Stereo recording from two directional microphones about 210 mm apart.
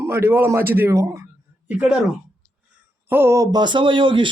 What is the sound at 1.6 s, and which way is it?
Speech, 5° right (ahead or behind).